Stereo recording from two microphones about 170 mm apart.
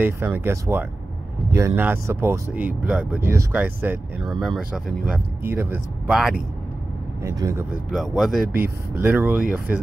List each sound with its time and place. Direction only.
0.0 s speech: 10° right (ahead or behind)
7.2 s speech: 15° right (ahead or behind)
7.9 s speech: centre (ahead or behind)
8.6 s speech: 10° right (ahead or behind)